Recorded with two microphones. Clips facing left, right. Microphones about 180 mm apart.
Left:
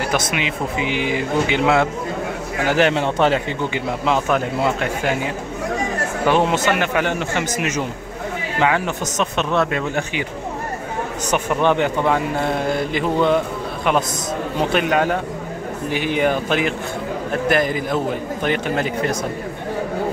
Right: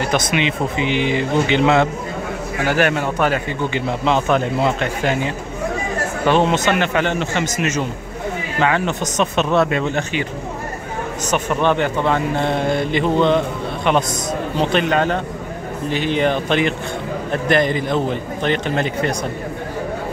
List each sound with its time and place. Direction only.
0.1 s a man's voice: 5° left (ahead or behind); by 3.8 s 20° left (ahead or behind)
4.0 s a man's voice: 5° left (ahead or behind)
9.6 s a man's voice: centre (ahead or behind)
11.2 s a man's voice: 15° left (ahead or behind)
14.6 s a man's voice: 10° left (ahead or behind)